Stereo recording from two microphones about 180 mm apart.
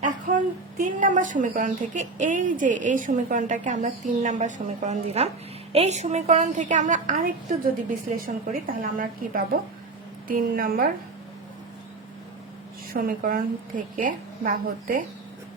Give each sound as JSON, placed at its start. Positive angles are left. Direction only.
{"t": 0.8, "sound": "a woman's voice", "side_deg": -45}
{"t": 12.9, "sound": "a woman's voice", "side_deg": -50}